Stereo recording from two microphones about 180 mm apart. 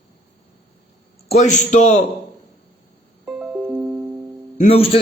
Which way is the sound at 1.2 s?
40° left (ahead or behind).